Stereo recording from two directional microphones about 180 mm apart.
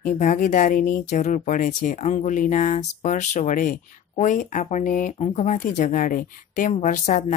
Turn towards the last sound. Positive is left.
turn(degrees=40)  # may be behind; listen again after turning